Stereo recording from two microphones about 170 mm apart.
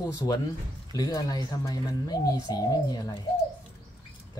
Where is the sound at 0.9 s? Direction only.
20° left (ahead or behind).